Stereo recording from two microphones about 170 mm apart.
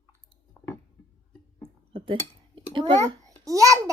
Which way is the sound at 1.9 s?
30° right (ahead or behind).